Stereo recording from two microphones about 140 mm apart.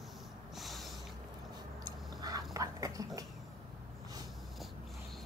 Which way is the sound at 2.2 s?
25° right (ahead or behind).